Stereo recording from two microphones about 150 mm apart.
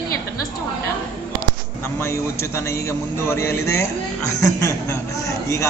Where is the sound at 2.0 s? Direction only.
20° left (ahead or behind).